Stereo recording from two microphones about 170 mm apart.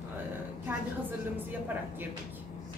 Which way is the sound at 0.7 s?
10° right (ahead or behind).